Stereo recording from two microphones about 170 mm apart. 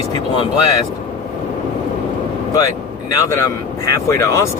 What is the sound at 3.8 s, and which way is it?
Speech, 15° left (ahead or behind).